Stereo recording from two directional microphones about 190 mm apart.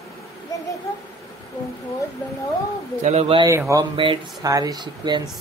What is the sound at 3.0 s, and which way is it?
Speech, 30° right (ahead or behind).